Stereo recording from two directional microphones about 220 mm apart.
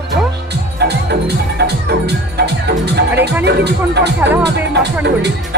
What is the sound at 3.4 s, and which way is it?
Speech, 50° right (ahead or behind).